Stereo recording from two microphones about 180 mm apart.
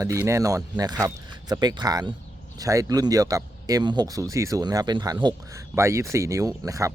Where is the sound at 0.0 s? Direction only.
15° right (ahead or behind).